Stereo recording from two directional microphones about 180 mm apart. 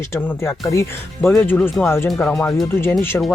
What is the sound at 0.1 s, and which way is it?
Speech, 15° left (ahead or behind).